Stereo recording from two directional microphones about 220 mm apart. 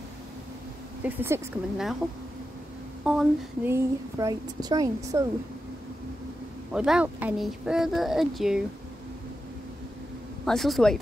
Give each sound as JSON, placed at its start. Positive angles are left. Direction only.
{"t": 1.0, "sound": "a woman's voice", "side_deg": -10}
{"t": 3.0, "sound": "speech", "side_deg": 0}
{"t": 3.7, "sound": "a woman's voice", "side_deg": -15}
{"t": 6.7, "sound": "speech", "side_deg": -5}
{"t": 10.4, "sound": "speech", "side_deg": 0}